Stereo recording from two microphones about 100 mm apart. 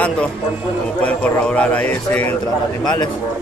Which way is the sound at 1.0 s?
10° left (ahead or behind).